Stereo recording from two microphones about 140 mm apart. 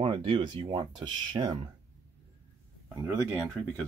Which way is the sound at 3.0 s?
15° right (ahead or behind).